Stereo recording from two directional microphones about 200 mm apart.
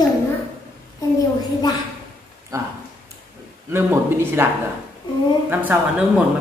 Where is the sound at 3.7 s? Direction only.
10° right (ahead or behind).